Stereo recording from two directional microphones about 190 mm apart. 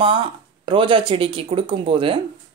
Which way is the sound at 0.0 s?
25° right (ahead or behind).